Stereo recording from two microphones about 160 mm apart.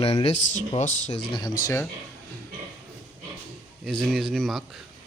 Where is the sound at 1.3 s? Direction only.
25° left (ahead or behind).